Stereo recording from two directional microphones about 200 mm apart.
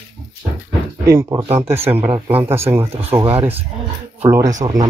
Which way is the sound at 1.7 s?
10° right (ahead or behind).